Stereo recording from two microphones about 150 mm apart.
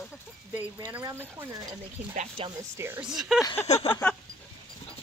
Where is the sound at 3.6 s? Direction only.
45° left (ahead or behind).